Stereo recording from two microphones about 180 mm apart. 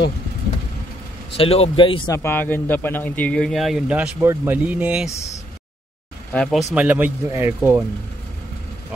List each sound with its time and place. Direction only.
1.3 s a man's voice: 35° left (ahead or behind)
2.1 s speech: 10° left (ahead or behind); by 5.1 s 5° right (ahead or behind)
6.3 s speech: 5° left (ahead or behind)
6.7 s speech: 10° right (ahead or behind)